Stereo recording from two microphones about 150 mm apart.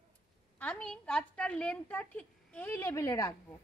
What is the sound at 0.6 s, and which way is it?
A woman's voice, 10° left (ahead or behind).